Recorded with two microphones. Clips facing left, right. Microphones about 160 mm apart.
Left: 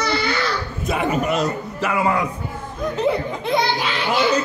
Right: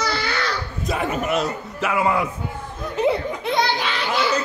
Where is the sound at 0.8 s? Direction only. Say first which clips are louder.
Left 3 dB; centre (ahead or behind).